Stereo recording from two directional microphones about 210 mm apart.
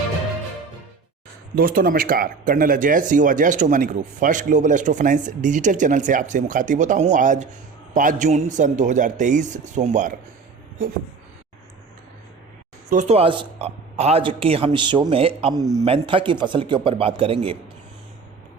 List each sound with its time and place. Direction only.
1.5 s speech: 45° right (ahead or behind)
12.9 s a man's voice: 30° right (ahead or behind)